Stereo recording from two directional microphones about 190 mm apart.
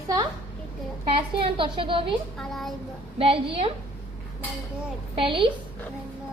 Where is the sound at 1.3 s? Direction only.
25° right (ahead or behind).